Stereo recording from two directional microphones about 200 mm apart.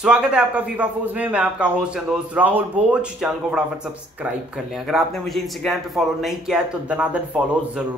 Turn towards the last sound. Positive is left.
turn(degrees=-5)  # may be behind; listen again after turning